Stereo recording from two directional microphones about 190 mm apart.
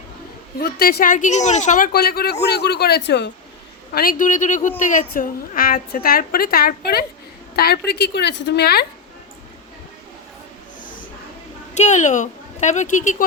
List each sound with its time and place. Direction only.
0.6 s a woman's voice: 55° left (ahead or behind)
1.9 s a man's voice: 55° left (ahead or behind)
3.9 s a woman's voice: 50° left (ahead or behind)
11.7 s a woman's voice: 40° left (ahead or behind)